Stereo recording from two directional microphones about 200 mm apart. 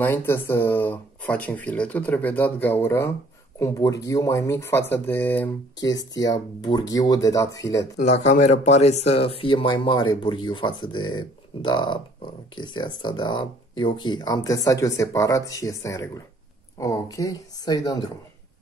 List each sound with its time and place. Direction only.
0.0 s speech: 10° left (ahead or behind)
8.0 s speech: 35° left (ahead or behind); by 18.1 s 20° left (ahead or behind)